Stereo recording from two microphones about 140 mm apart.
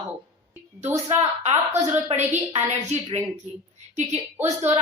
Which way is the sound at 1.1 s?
50° right (ahead or behind).